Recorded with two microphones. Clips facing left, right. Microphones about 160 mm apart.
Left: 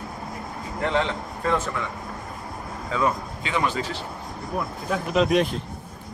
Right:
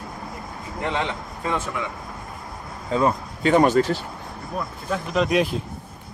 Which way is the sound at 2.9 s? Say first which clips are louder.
Right 3 dB; 35° right (ahead or behind).